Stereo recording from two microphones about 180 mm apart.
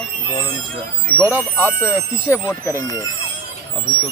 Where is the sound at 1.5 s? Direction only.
10° left (ahead or behind).